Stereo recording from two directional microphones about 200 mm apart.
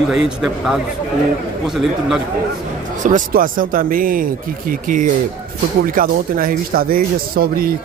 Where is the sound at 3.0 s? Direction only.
40° right (ahead or behind).